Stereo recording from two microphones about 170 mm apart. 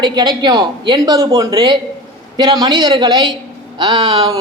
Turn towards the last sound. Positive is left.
turn(degrees=-25)  # may be behind; listen again after turning